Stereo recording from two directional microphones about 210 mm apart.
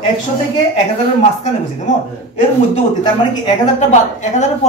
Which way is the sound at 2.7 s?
20° left (ahead or behind).